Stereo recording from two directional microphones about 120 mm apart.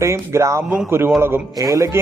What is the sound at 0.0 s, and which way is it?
Speech, 25° right (ahead or behind).